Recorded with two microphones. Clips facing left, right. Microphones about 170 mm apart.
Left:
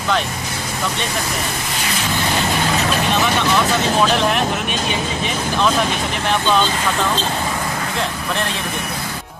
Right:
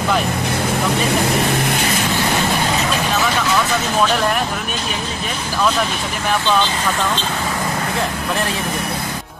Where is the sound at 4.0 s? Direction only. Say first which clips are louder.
Right 1 dB; centre (ahead or behind).